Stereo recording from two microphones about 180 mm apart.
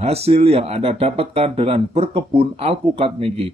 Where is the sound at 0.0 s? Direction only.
35° right (ahead or behind).